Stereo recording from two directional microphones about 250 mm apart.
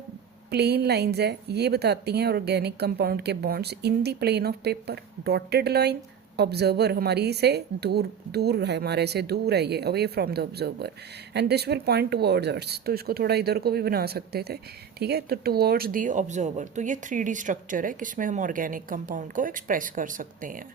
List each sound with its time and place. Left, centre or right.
0.5 s a woman's voice: right